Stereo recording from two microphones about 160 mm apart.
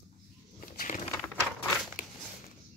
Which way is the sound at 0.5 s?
60° left (ahead or behind).